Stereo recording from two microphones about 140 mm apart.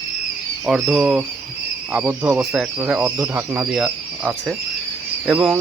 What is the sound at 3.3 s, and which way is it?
Speech, 25° right (ahead or behind).